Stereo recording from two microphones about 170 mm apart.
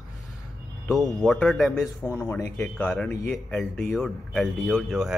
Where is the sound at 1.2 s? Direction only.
Centre (ahead or behind).